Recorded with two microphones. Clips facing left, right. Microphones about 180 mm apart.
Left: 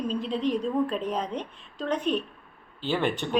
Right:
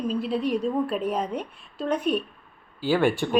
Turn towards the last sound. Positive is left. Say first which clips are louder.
# right 5 dB
turn(degrees=-10)  # may be behind; listen again after turning